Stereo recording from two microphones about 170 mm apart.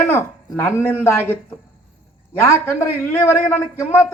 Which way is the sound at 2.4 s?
15° left (ahead or behind).